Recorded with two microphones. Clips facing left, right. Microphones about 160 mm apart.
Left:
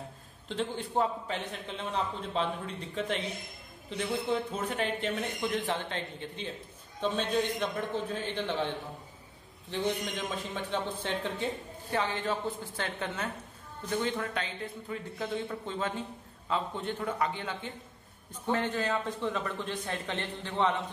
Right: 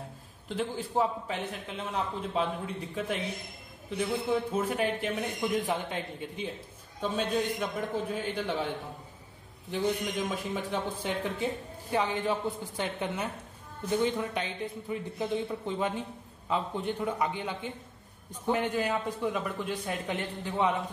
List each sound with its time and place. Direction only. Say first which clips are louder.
0.5 s a man's voice: right 1 dB; 5° right (ahead or behind)
10.5 s a man's voice: right 1 dB; 10° right (ahead or behind)